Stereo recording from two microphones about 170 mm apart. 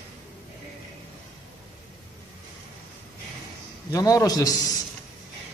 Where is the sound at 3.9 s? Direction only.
20° left (ahead or behind).